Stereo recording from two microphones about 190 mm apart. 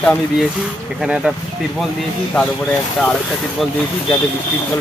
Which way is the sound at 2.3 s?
5° left (ahead or behind).